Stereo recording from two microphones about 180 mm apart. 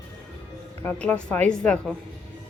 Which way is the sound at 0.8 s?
10° left (ahead or behind).